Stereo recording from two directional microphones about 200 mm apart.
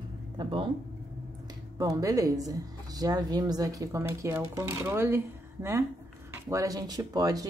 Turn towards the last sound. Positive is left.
turn(degrees=-20)  # may be behind; listen again after turning